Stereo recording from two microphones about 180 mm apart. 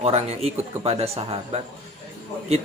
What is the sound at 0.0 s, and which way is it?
Speech, 35° right (ahead or behind).